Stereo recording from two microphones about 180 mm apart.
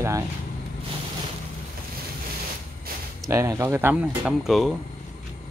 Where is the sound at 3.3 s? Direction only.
15° right (ahead or behind); by 4.7 s centre (ahead or behind).